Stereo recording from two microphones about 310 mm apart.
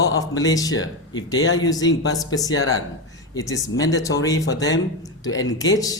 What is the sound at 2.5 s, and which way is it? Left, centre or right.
Speech, left.